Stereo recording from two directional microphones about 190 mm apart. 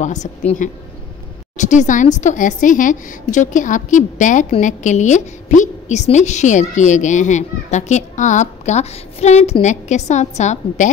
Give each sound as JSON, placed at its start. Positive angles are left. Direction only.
{"t": 0.0, "sound": "a woman's voice", "side_deg": 40}